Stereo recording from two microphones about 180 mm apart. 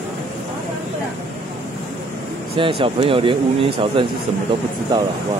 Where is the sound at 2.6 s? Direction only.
30° right (ahead or behind).